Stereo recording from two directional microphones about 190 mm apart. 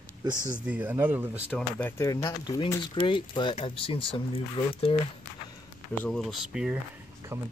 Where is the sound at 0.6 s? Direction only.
10° right (ahead or behind).